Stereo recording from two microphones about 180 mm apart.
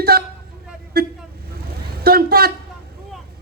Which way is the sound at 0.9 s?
55° right (ahead or behind).